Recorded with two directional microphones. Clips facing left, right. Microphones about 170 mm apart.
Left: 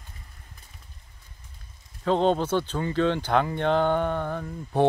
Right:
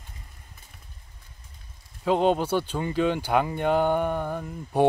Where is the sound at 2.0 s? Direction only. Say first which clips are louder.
Even; 10° right (ahead or behind).